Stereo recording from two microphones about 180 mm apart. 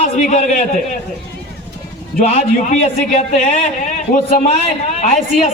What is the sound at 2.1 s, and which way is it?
A man's voice, 45° left (ahead or behind).